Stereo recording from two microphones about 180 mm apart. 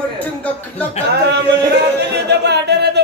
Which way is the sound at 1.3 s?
70° right (ahead or behind).